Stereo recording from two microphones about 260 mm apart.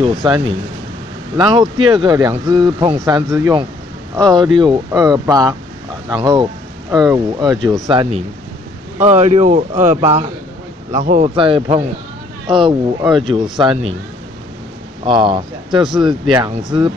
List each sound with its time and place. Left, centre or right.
0.2 s speech: centre
13.0 s speech: centre
13.3 s speech: centre
15.0 s speech: centre